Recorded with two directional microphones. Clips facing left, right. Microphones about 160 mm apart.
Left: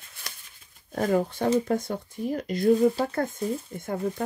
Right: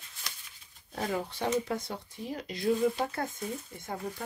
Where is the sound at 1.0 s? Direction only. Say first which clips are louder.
Left 8 dB; 50° left (ahead or behind).